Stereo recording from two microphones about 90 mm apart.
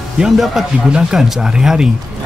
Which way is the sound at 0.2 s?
5° right (ahead or behind).